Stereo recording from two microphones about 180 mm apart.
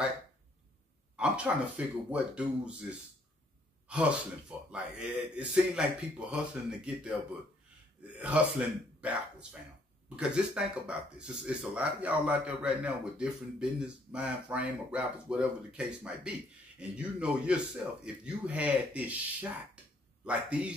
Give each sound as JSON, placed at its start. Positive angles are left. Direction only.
{"t": 1.1, "sound": "speech", "side_deg": -5}
{"t": 20.2, "sound": "speech", "side_deg": -5}